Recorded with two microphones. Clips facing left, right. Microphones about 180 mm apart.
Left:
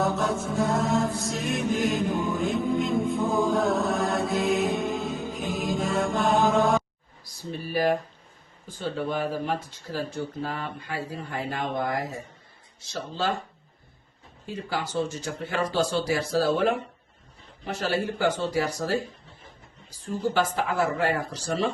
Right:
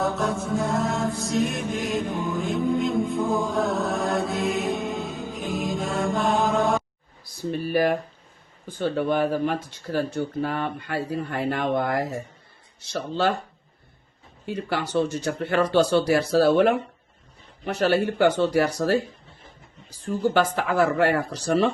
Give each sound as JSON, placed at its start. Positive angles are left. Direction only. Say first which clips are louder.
{"t": 0.0, "sound": "mantra", "louder": "even", "side_deg": 0}
{"t": 8.6, "sound": "speech", "louder": "right 5 dB", "side_deg": -60}
{"t": 14.4, "sound": "speech", "louder": "right 4 dB", "side_deg": -65}
{"t": 20.3, "sound": "speech", "louder": "right 2 dB", "side_deg": -65}